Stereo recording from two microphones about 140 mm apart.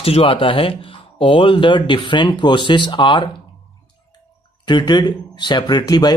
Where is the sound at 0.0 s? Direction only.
45° left (ahead or behind).